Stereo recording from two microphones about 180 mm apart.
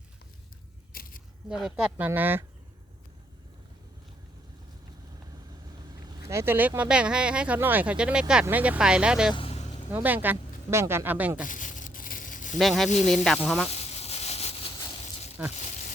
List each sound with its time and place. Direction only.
0.9 s biting: 55° left (ahead or behind)
1.5 s speech: centre (ahead or behind)
5.9 s speech: 20° right (ahead or behind)
9.3 s vehicle: 30° left (ahead or behind)
9.9 s speech: 10° right (ahead or behind)
11.4 s a sound: 45° left (ahead or behind)
12.5 s speech: centre (ahead or behind)
13.7 s a sound: 35° left (ahead or behind)
15.4 s speech: 10° right (ahead or behind)